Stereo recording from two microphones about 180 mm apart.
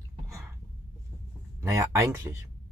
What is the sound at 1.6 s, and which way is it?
Speech, 15° right (ahead or behind).